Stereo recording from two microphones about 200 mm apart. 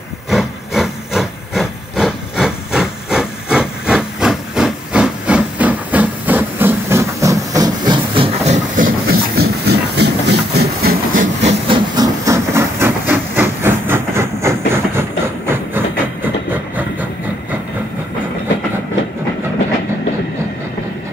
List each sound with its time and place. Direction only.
0.3 s wood: centre (ahead or behind); by 8.5 s 25° right (ahead or behind)
8.7 s a sound: 45° right (ahead or behind)
11.4 s steam: 25° right (ahead or behind)
15.0 s train: 10° right (ahead or behind)